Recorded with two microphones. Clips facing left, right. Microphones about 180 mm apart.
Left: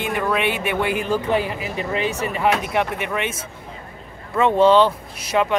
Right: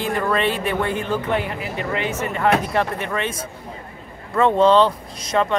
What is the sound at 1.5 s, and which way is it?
A man's voice, 20° left (ahead or behind).